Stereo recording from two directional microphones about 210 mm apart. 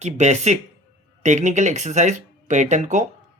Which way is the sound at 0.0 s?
35° right (ahead or behind).